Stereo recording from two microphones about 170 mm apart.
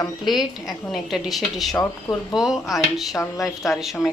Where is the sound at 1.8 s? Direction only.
20° left (ahead or behind).